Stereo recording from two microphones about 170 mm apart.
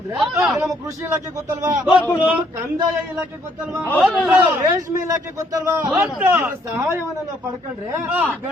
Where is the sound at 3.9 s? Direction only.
5° right (ahead or behind).